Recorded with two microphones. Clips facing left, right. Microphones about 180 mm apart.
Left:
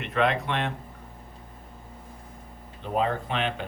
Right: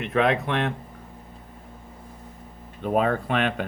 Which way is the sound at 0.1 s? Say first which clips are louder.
Right 3 dB; 50° right (ahead or behind).